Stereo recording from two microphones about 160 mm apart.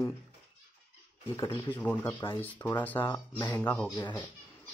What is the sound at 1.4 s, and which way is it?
Speech, 30° left (ahead or behind).